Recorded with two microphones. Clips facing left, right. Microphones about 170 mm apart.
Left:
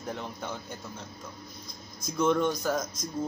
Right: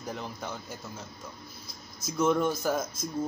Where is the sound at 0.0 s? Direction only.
Centre (ahead or behind).